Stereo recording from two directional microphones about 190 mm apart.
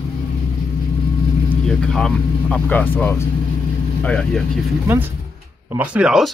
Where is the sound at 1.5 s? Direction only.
5° left (ahead or behind).